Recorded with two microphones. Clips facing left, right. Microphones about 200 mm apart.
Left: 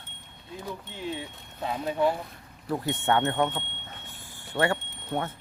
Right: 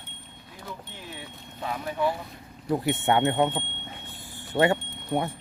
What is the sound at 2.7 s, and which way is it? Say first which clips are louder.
Speech: right 2 dB; 15° right (ahead or behind).